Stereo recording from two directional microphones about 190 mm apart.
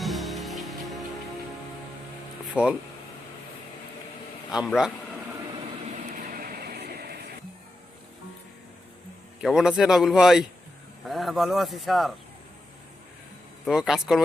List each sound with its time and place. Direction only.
0.0 s music: centre (ahead or behind)
2.6 s speech: 5° right (ahead or behind)
4.5 s speech: 5° right (ahead or behind)
5.9 s vehicle: 45° right (ahead or behind)
9.4 s speech: 5° right (ahead or behind)
13.7 s speech: 5° right (ahead or behind)